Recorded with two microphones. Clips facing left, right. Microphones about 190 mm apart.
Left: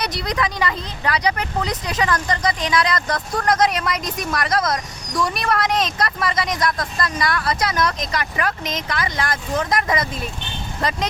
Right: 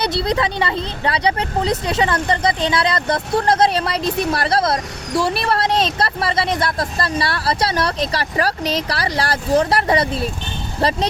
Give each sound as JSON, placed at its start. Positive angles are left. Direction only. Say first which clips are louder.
{"t": 0.0, "sound": "speech", "louder": "right 5 dB", "side_deg": -30}